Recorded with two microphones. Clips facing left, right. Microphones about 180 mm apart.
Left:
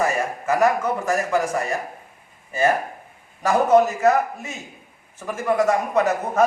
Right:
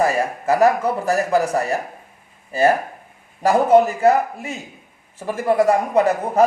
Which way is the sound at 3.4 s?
30° right (ahead or behind).